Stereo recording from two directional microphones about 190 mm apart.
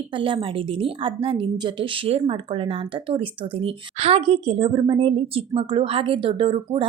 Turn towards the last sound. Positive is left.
turn(degrees=-30)  # may be behind; listen again after turning